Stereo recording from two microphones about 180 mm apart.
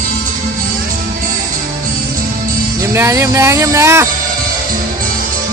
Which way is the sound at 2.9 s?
15° right (ahead or behind).